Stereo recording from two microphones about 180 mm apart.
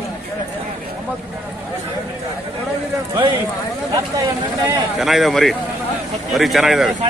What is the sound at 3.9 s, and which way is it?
Speech, 15° right (ahead or behind).